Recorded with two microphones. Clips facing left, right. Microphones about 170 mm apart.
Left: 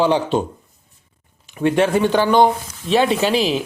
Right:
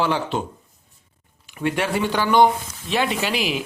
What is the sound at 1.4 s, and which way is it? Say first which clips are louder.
Speech: left 7 dB; 20° left (ahead or behind).